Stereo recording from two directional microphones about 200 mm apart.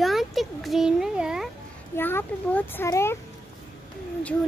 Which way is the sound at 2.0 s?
10° left (ahead or behind).